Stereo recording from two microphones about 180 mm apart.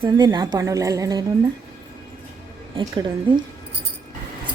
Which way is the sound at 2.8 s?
25° right (ahead or behind).